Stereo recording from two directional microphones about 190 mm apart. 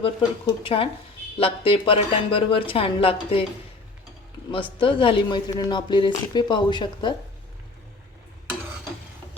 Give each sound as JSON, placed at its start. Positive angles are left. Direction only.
{"t": 0.0, "sound": "speech", "side_deg": 30}
{"t": 4.5, "sound": "speech", "side_deg": 25}